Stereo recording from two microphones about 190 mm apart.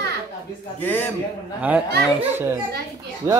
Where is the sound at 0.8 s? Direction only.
10° left (ahead or behind).